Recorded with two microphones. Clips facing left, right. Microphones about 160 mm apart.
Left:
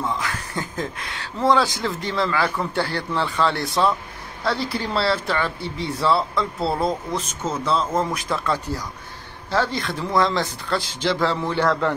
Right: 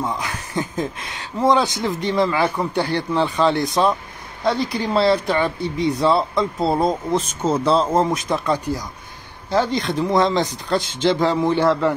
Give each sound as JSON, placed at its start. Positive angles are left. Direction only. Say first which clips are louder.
{"t": 0.0, "sound": "speech", "louder": "right 1 dB", "side_deg": -20}
{"t": 7.6, "sound": "speech", "louder": "right 4 dB", "side_deg": -35}